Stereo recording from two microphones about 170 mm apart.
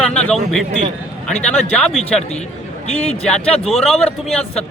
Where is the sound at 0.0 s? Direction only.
5° left (ahead or behind).